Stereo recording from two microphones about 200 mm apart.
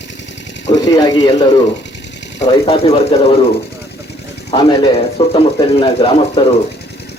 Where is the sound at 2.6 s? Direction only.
30° left (ahead or behind).